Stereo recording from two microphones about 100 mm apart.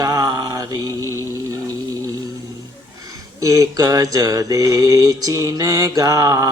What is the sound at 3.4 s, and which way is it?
Mantra, 35° right (ahead or behind).